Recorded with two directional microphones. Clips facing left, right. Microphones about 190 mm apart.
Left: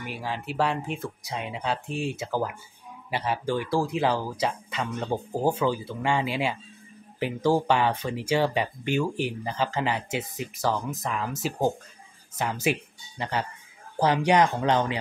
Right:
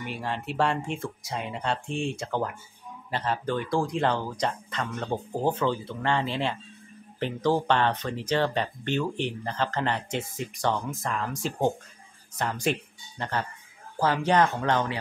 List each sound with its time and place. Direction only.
0.0 s speech: centre (ahead or behind)
12.4 s speech: 5° left (ahead or behind)